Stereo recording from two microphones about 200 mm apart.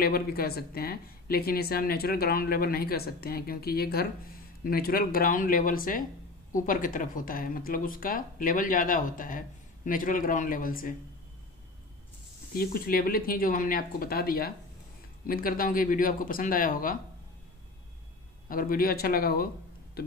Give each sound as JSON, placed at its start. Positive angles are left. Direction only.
{"t": 0.0, "sound": "speech", "side_deg": 50}
{"t": 12.5, "sound": "speech", "side_deg": 50}
{"t": 18.5, "sound": "speech", "side_deg": 45}